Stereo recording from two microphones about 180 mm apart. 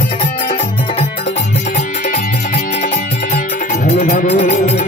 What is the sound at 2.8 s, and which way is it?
Music, 40° left (ahead or behind).